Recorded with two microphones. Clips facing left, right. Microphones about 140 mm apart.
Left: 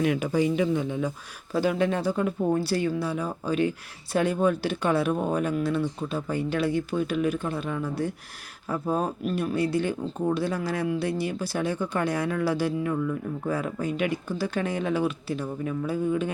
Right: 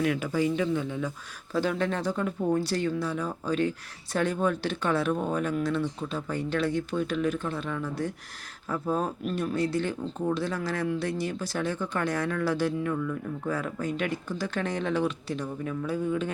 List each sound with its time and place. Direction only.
0.0 s speech: 20° left (ahead or behind)